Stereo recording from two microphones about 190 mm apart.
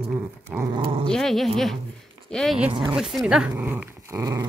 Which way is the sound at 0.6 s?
25° right (ahead or behind).